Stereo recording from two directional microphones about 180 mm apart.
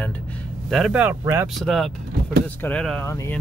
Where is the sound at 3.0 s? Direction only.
15° left (ahead or behind).